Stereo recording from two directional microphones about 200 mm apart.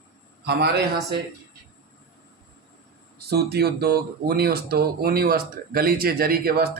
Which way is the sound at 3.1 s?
50° right (ahead or behind).